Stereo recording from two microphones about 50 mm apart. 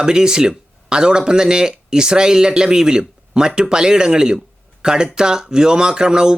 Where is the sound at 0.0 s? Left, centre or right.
Centre.